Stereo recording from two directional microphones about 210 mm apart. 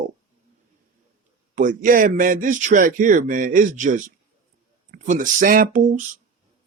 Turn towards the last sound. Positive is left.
turn(degrees=-40)  # may be behind; listen again after turning